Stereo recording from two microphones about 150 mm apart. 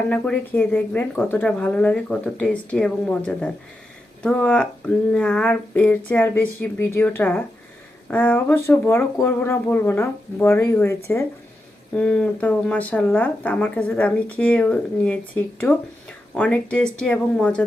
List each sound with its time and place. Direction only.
0.1 s speech: 10° left (ahead or behind)